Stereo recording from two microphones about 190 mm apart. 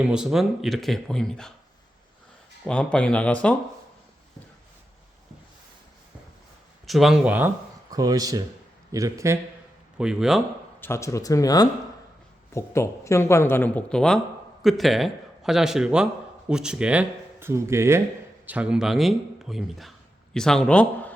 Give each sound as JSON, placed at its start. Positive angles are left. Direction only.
{"t": 0.0, "sound": "speech", "side_deg": -5}
{"t": 2.6, "sound": "speech", "side_deg": 5}
{"t": 6.8, "sound": "speech", "side_deg": 0}
{"t": 7.9, "sound": "speech", "side_deg": -20}
{"t": 10.0, "sound": "speech", "side_deg": -5}
{"t": 10.8, "sound": "a man's voice", "side_deg": 15}